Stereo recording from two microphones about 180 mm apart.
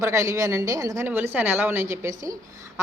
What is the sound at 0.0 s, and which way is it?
A woman's voice, 20° right (ahead or behind).